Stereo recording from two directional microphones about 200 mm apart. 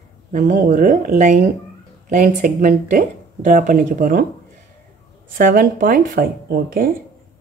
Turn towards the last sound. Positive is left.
turn(degrees=-45)  # may be behind; listen again after turning